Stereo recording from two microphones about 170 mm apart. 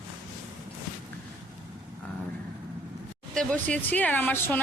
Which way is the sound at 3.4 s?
5° left (ahead or behind).